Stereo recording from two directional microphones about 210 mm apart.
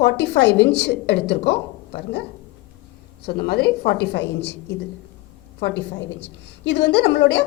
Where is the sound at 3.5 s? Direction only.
50° left (ahead or behind).